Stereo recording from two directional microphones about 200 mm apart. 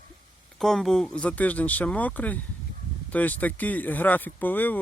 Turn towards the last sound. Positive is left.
turn(degrees=10)  # may be behind; listen again after turning